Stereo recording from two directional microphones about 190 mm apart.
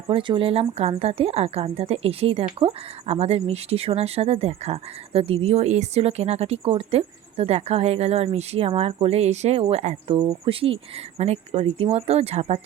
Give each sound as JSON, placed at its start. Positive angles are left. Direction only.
{"t": 0.1, "sound": "a woman's voice", "side_deg": -25}